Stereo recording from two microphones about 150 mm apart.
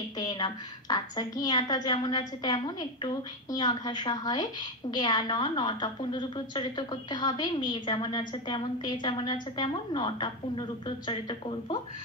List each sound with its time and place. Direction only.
0.2 s a woman's voice: 30° left (ahead or behind)